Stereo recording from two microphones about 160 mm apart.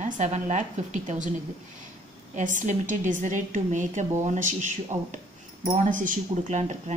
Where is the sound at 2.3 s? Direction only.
50° right (ahead or behind).